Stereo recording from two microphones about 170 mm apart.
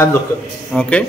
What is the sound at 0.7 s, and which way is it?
Speech, 5° left (ahead or behind).